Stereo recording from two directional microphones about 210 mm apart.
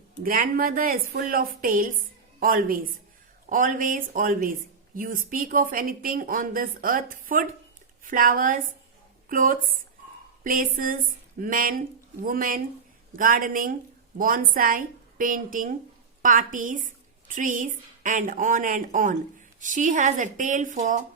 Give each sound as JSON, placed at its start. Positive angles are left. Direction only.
{"t": 0.2, "sound": "a woman's voice", "side_deg": -40}